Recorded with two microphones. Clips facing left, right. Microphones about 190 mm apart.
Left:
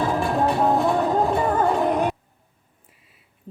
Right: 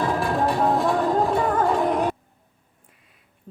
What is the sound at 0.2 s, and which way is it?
Music, centre (ahead or behind).